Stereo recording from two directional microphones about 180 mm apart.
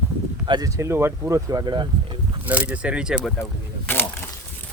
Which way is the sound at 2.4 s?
10° right (ahead or behind).